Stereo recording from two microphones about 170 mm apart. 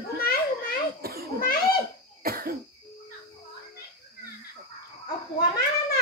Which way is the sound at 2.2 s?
60° right (ahead or behind).